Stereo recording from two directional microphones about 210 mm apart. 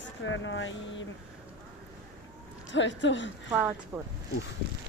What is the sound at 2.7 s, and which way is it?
Speech, 60° left (ahead or behind).